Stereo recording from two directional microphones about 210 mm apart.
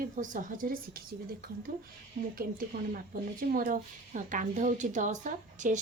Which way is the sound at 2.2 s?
45° right (ahead or behind).